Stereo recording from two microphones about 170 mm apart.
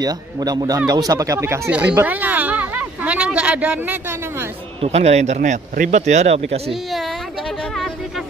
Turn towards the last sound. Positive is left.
turn(degrees=0)  # may be behind; listen again after turning